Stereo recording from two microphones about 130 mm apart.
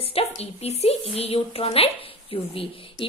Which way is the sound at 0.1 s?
50° left (ahead or behind).